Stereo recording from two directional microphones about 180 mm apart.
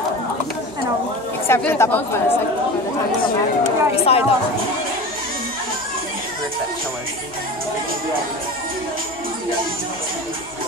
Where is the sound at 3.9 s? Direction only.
35° left (ahead or behind).